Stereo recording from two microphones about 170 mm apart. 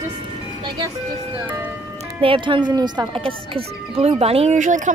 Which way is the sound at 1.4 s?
10° right (ahead or behind).